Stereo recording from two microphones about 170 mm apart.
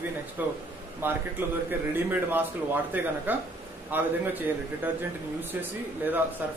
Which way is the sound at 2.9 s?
10° right (ahead or behind).